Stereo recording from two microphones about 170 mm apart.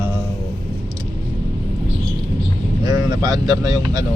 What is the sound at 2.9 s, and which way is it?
Speech, 25° right (ahead or behind).